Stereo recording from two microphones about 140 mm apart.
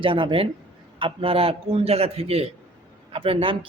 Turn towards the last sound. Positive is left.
turn(degrees=-40)  # may be behind; listen again after turning